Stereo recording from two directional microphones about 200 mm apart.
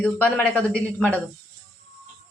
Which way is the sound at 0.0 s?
5° left (ahead or behind).